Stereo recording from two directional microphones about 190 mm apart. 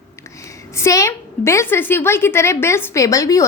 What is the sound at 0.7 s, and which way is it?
A woman's voice, 15° left (ahead or behind).